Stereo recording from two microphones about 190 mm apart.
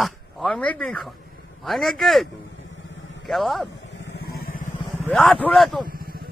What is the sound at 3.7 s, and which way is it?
Vehicle, 70° left (ahead or behind).